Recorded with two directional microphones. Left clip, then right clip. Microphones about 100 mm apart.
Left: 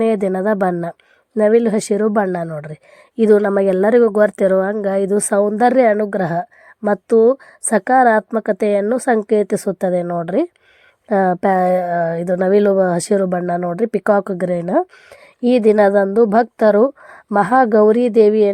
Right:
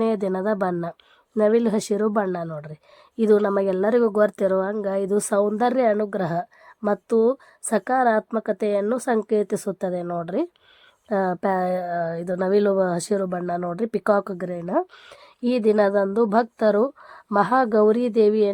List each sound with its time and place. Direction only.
0.0 s a woman's voice: 30° left (ahead or behind)
13.6 s a woman's voice: 25° left (ahead or behind)